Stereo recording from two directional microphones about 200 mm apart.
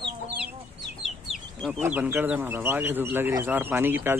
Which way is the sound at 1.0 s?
Centre (ahead or behind).